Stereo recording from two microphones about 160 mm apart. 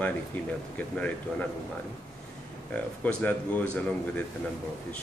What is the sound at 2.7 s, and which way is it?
Speech, 10° left (ahead or behind).